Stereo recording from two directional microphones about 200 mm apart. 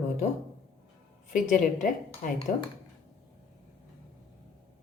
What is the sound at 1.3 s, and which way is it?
A woman's voice, 40° left (ahead or behind).